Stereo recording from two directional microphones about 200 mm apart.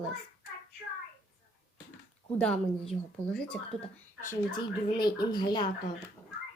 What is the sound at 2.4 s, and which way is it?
A child's voice, 5° left (ahead or behind).